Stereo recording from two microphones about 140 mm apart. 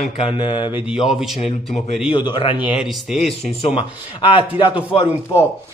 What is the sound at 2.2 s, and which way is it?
Speech, 35° left (ahead or behind).